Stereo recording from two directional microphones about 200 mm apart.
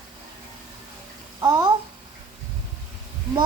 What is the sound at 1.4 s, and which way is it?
Babbling, 20° right (ahead or behind).